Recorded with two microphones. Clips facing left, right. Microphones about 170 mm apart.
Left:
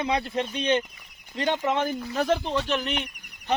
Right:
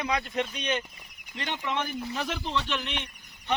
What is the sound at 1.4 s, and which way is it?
Speech, 45° left (ahead or behind).